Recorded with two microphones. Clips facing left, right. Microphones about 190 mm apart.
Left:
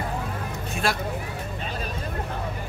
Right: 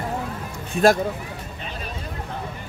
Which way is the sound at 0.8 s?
40° right (ahead or behind).